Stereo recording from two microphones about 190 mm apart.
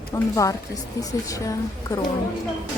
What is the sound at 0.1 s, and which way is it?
Speech, 15° left (ahead or behind).